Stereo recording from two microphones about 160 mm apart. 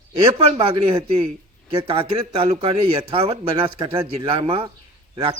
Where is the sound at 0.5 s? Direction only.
35° right (ahead or behind).